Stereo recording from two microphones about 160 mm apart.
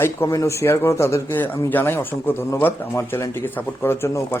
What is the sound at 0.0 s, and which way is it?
Speech, 20° left (ahead or behind).